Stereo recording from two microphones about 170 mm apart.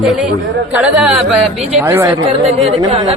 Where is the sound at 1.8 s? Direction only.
15° right (ahead or behind).